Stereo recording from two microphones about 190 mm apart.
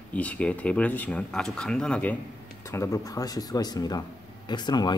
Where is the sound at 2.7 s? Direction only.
15° left (ahead or behind).